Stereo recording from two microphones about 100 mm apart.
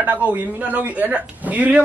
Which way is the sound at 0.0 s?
15° right (ahead or behind).